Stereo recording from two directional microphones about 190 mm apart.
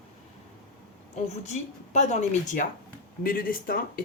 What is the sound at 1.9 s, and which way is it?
Speech, 35° left (ahead or behind).